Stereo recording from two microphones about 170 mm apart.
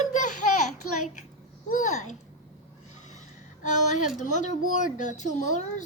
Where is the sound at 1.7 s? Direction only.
50° left (ahead or behind).